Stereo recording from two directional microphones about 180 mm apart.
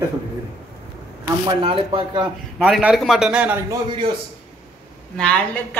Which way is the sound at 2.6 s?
Centre (ahead or behind).